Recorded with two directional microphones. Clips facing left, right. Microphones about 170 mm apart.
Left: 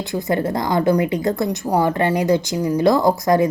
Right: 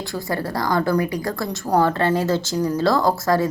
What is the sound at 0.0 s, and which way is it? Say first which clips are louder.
A woman's voice: left 5 dB; 20° left (ahead or behind).